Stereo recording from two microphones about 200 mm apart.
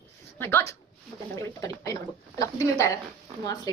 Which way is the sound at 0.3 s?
10° left (ahead or behind).